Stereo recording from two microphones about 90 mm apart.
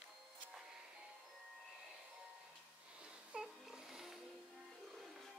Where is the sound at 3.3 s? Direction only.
10° right (ahead or behind).